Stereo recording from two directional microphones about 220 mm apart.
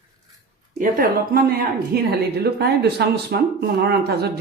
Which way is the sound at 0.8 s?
40° right (ahead or behind).